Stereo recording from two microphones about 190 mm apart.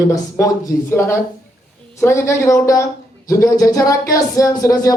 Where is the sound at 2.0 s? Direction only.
15° left (ahead or behind).